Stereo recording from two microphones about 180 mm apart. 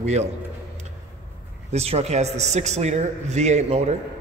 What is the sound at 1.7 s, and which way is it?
A man's voice, 35° right (ahead or behind).